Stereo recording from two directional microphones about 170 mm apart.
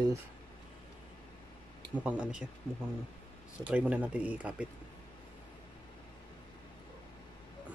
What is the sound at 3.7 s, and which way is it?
Speech, 10° right (ahead or behind).